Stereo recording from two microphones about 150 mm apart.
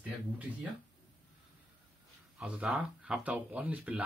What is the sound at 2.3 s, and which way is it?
Speech, 5° right (ahead or behind).